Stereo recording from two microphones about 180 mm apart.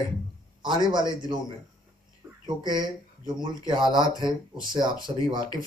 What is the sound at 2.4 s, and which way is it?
Speech, 25° right (ahead or behind).